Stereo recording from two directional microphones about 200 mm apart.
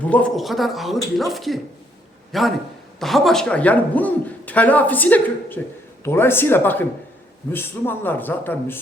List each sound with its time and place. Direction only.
0.0 s a man's voice: 5° left (ahead or behind)